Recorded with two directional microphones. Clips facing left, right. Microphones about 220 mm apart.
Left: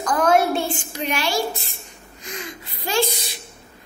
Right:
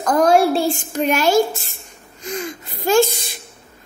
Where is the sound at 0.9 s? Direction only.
45° right (ahead or behind).